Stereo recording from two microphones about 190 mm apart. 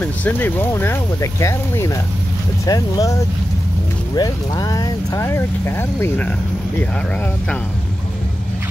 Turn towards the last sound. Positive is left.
turn(degrees=10)  # may be behind; listen again after turning